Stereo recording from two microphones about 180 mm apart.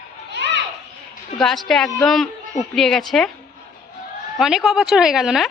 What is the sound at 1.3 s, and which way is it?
A woman's voice, centre (ahead or behind).